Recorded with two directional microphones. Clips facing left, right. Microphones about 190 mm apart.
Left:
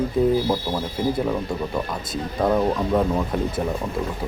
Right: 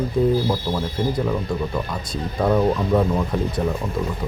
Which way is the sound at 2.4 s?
Centre (ahead or behind).